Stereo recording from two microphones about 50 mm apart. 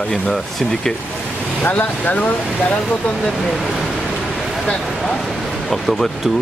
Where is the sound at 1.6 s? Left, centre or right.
Left.